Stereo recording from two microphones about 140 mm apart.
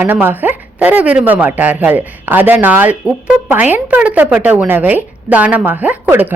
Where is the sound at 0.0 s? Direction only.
15° right (ahead or behind).